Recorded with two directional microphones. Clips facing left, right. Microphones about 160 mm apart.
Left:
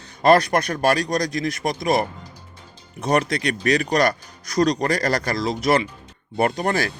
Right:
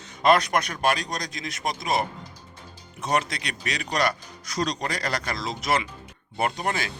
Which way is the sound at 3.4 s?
55° left (ahead or behind).